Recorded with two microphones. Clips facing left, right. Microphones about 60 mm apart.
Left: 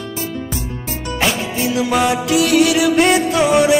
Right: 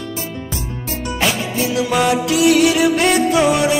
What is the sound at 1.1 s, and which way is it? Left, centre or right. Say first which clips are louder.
Music: even; centre.